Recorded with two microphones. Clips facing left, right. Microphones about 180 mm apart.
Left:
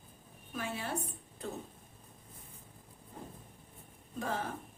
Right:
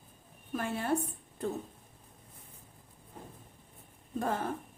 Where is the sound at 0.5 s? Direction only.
50° right (ahead or behind).